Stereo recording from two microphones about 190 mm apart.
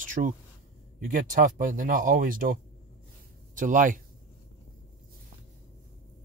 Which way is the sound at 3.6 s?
45° right (ahead or behind).